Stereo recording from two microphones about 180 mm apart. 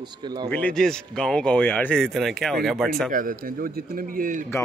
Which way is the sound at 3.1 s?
50° right (ahead or behind).